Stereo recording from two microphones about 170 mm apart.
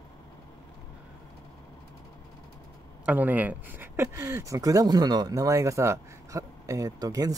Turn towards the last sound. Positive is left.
turn(degrees=-20)  # may be behind; listen again after turning